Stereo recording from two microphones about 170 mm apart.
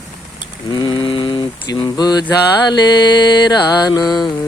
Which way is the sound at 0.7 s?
25° left (ahead or behind).